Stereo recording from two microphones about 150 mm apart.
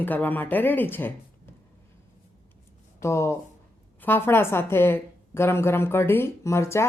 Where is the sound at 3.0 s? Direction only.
20° left (ahead or behind).